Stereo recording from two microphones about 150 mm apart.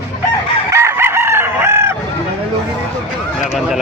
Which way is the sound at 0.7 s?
20° right (ahead or behind).